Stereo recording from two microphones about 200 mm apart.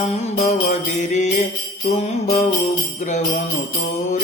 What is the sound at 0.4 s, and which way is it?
Jingle bell, 40° left (ahead or behind).